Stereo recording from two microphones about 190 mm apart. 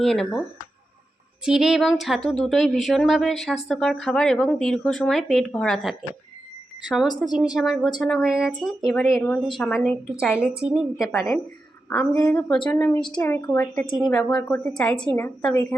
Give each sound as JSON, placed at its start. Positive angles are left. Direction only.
{"t": 0.0, "sound": "speech", "side_deg": 0}
{"t": 1.5, "sound": "speech", "side_deg": 0}
{"t": 11.9, "sound": "a woman's voice", "side_deg": 10}
{"t": 13.9, "sound": "speech", "side_deg": 5}